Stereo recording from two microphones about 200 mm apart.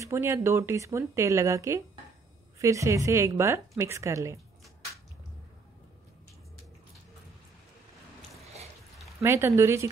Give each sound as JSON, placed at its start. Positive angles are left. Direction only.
{"t": 0.0, "sound": "speech", "side_deg": -10}
{"t": 9.2, "sound": "speech", "side_deg": -15}